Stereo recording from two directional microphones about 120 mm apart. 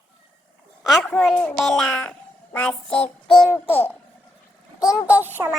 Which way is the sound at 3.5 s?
20° left (ahead or behind).